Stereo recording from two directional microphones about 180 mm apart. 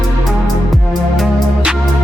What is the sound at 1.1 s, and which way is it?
Music, 5° right (ahead or behind).